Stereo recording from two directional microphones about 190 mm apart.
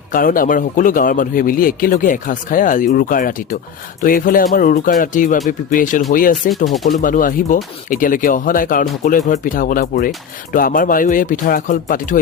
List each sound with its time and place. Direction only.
0.1 s a man's voice: 45° left (ahead or behind)